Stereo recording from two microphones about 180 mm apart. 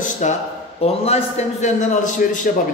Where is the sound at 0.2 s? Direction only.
40° left (ahead or behind).